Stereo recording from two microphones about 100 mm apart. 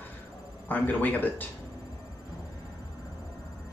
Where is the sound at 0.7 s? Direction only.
15° left (ahead or behind).